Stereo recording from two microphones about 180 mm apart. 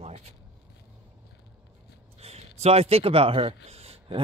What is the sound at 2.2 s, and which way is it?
Speech, 35° right (ahead or behind).